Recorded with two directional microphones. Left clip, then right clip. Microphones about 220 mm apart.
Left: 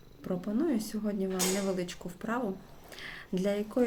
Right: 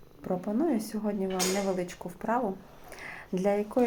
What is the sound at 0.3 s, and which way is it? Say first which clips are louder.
Speech: right 3 dB; 15° left (ahead or behind).